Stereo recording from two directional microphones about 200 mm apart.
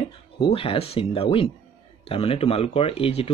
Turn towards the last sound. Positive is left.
turn(degrees=30)  # may be behind; listen again after turning